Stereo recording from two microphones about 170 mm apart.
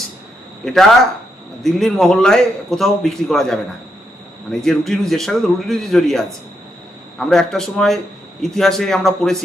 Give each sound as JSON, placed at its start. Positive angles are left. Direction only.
{"t": 0.6, "sound": "speech", "side_deg": 5}
{"t": 4.6, "sound": "speech", "side_deg": 0}